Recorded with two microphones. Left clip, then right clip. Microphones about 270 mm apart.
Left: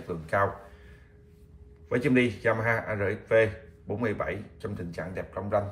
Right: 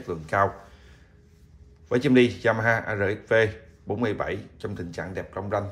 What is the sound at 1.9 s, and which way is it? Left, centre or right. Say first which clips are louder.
Speech: right 5 dB; centre.